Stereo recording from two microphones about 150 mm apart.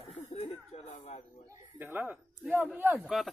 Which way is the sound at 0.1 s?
45° left (ahead or behind).